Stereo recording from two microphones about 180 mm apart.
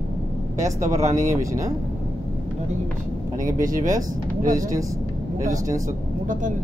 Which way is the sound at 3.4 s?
45° right (ahead or behind).